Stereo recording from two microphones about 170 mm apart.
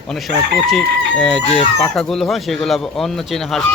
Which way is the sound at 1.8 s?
5° left (ahead or behind).